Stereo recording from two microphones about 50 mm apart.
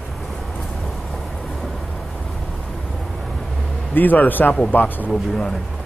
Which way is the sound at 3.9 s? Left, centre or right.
Left.